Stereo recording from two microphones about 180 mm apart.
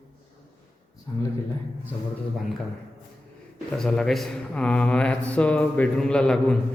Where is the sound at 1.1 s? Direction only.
15° left (ahead or behind).